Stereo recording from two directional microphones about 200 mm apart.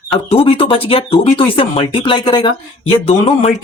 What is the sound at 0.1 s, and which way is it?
Speech, 30° left (ahead or behind).